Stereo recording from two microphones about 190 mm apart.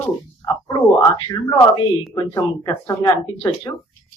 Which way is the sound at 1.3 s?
20° left (ahead or behind).